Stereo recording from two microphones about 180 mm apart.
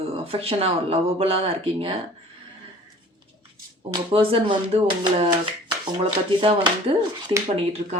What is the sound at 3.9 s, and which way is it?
Speech, 30° right (ahead or behind).